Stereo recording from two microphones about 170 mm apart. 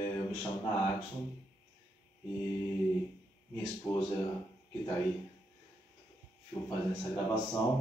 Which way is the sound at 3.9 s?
20° left (ahead or behind).